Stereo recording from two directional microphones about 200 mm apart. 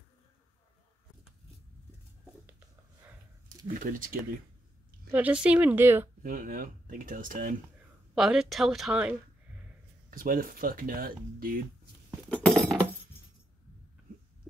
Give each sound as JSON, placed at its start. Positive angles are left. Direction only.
{"t": 3.6, "sound": "speech", "side_deg": -45}
{"t": 5.1, "sound": "speech", "side_deg": -5}
{"t": 6.2, "sound": "speech", "side_deg": -45}
{"t": 8.1, "sound": "speech", "side_deg": 0}
{"t": 10.1, "sound": "speech", "side_deg": -45}
{"t": 12.3, "sound": "glass", "side_deg": 5}